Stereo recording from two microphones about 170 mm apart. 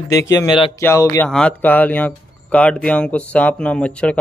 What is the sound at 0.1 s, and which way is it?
Speech, 15° left (ahead or behind).